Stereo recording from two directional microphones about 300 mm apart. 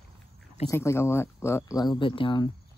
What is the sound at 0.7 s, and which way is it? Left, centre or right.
Speech, centre.